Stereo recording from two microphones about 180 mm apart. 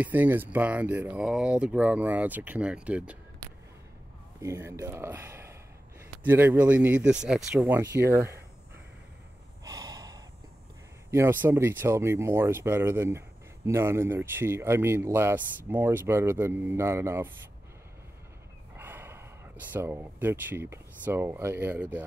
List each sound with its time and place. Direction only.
0.0 s speech: 10° right (ahead or behind)
4.4 s speech: 15° right (ahead or behind)
9.7 s gasp: 20° right (ahead or behind)
11.1 s speech: 15° right (ahead or behind)
18.8 s speech: 10° right (ahead or behind)